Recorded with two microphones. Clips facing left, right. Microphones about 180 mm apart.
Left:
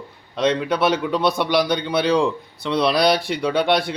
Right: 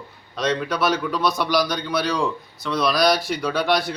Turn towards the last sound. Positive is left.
turn(degrees=25)  # may be behind; listen again after turning